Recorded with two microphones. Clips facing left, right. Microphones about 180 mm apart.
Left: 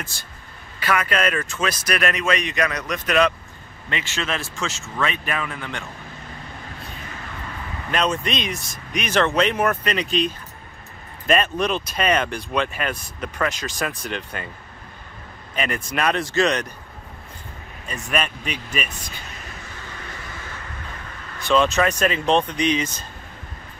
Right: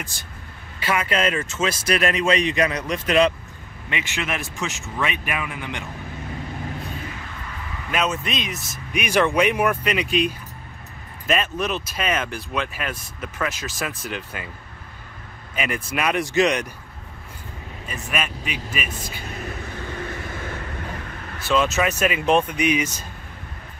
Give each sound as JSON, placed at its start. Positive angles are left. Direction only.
{"t": 0.7, "sound": "speech", "side_deg": -25}
{"t": 3.9, "sound": "speech", "side_deg": -15}
{"t": 7.9, "sound": "speech", "side_deg": -5}
{"t": 15.5, "sound": "speech", "side_deg": -5}
{"t": 17.8, "sound": "speech", "side_deg": -5}
{"t": 21.5, "sound": "speech", "side_deg": -5}